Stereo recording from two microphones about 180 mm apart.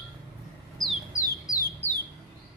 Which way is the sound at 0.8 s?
Centre (ahead or behind).